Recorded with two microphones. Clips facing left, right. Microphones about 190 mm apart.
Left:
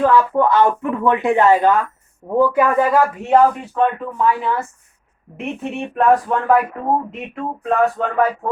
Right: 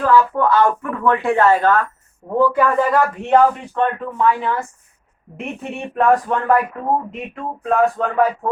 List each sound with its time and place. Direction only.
0.0 s speech: 15° left (ahead or behind); by 8.3 s centre (ahead or behind)